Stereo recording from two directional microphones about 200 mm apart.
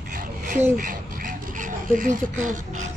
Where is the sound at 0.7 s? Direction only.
40° right (ahead or behind).